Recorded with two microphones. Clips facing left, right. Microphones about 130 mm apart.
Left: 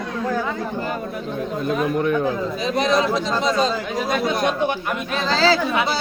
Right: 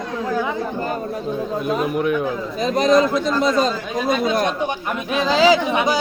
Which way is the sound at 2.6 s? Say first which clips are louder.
Right 5 dB; 45° right (ahead or behind).